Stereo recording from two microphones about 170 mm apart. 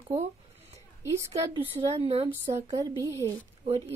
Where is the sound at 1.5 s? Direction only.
35° right (ahead or behind).